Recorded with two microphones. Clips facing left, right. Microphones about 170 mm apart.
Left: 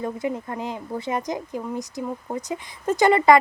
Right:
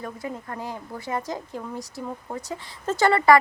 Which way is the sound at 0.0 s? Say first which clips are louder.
Left 6 dB; 20° left (ahead or behind).